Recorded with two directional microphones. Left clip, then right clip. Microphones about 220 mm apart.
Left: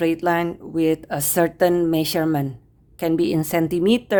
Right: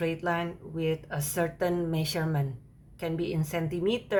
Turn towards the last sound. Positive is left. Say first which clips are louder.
# left 9 dB
turn(degrees=50)  # may be behind; listen again after turning